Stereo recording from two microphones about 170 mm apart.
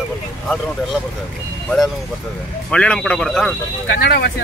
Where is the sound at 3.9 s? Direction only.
75° left (ahead or behind).